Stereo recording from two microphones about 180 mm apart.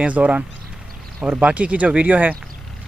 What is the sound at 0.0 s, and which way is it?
Speech, 5° right (ahead or behind).